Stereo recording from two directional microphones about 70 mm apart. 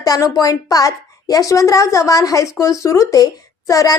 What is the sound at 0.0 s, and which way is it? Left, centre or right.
A woman's voice, left.